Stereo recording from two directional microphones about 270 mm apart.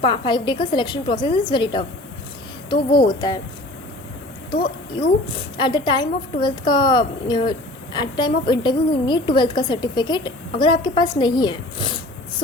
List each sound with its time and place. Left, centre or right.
0.0 s a woman's voice: centre
4.6 s a woman's voice: centre